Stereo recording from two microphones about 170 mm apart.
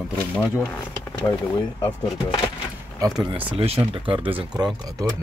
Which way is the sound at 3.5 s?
35° right (ahead or behind).